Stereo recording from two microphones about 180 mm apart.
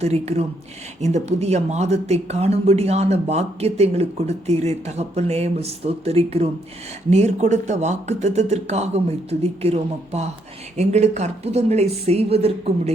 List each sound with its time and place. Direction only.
0.0 s speech: 35° right (ahead or behind)